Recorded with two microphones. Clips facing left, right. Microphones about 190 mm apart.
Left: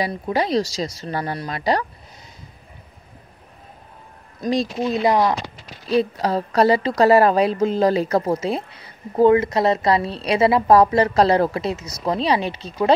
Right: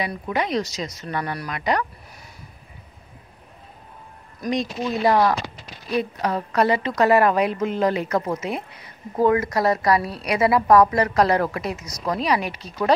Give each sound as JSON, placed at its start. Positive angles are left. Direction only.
{"t": 0.0, "sound": "speech", "side_deg": 35}
{"t": 4.4, "sound": "speech", "side_deg": 30}
{"t": 5.0, "sound": "speech", "side_deg": 20}
{"t": 5.9, "sound": "a woman's voice", "side_deg": 30}